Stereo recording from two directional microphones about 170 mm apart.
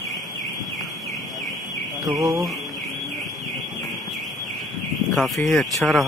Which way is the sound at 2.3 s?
Centre (ahead or behind).